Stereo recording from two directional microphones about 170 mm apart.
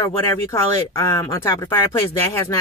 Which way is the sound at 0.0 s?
15° left (ahead or behind).